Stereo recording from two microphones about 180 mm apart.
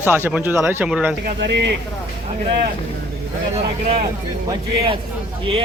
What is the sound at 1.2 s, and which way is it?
Speech, 70° right (ahead or behind).